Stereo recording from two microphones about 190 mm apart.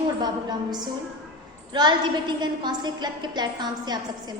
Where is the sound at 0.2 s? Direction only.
20° right (ahead or behind).